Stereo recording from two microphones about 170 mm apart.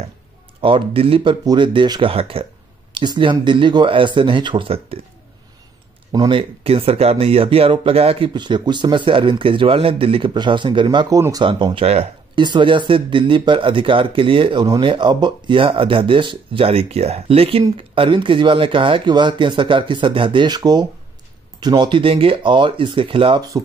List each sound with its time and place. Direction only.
0.6 s speech: 30° right (ahead or behind)
6.1 s speech: 30° right (ahead or behind)
11.4 s speech: 30° right (ahead or behind)